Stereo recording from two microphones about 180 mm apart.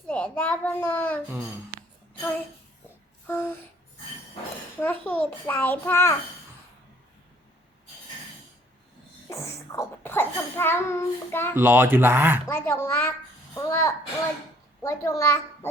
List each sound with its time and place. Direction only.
0.1 s a child's voice: 10° left (ahead or behind)
3.2 s a sound: 10° left (ahead or behind)
4.8 s a child's voice: 10° left (ahead or behind)
9.7 s a child's voice: 10° left (ahead or behind)
11.5 s speech: 10° right (ahead or behind)
12.5 s a woman's voice: 15° left (ahead or behind)